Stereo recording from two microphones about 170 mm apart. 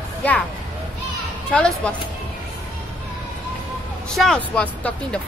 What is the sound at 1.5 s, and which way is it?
Speech, 5° left (ahead or behind).